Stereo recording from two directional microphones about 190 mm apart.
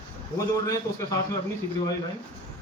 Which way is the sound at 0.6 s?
15° left (ahead or behind).